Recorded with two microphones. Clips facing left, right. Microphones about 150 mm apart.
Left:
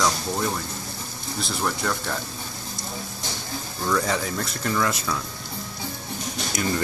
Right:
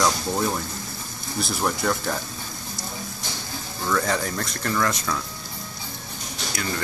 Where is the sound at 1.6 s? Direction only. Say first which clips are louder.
Right 3 dB; 5° right (ahead or behind).